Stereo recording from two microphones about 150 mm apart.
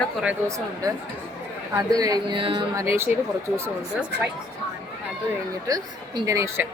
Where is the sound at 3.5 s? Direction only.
15° right (ahead or behind).